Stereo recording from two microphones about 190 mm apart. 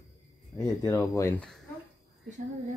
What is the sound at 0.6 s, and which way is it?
Speech, 15° left (ahead or behind).